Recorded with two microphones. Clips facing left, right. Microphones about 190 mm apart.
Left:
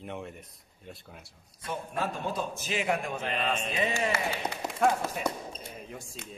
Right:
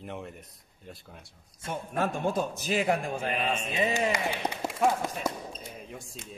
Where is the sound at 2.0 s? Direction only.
50° right (ahead or behind).